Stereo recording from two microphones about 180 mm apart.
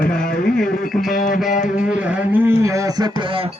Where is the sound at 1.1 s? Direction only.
45° left (ahead or behind).